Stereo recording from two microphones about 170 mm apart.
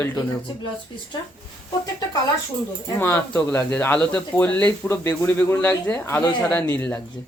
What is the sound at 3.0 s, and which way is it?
Speech, 10° left (ahead or behind).